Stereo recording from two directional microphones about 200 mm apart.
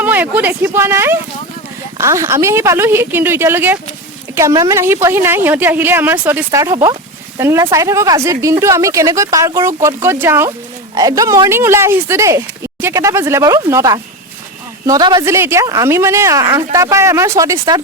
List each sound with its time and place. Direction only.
0.0 s a woman's voice: 10° right (ahead or behind)